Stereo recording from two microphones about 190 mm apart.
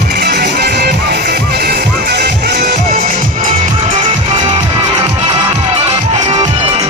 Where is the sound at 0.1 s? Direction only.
60° right (ahead or behind).